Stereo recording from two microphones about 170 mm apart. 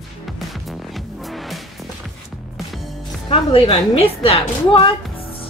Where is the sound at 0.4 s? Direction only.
Centre (ahead or behind).